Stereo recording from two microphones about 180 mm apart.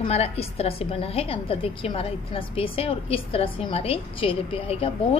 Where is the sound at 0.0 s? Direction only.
35° left (ahead or behind).